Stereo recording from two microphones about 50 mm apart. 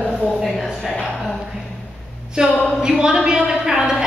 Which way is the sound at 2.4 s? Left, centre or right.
Right.